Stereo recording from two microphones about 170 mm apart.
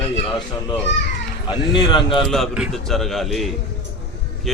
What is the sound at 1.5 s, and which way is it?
Speech, 30° left (ahead or behind).